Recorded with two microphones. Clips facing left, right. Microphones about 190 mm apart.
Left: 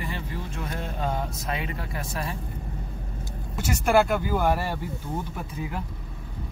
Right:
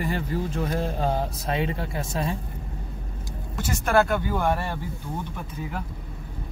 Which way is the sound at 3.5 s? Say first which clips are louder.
Left 1 dB; 10° left (ahead or behind).